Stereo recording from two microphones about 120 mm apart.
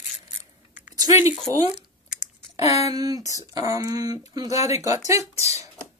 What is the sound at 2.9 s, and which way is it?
Speech, 30° right (ahead or behind).